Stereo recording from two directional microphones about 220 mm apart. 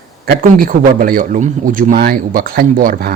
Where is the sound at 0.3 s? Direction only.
40° right (ahead or behind).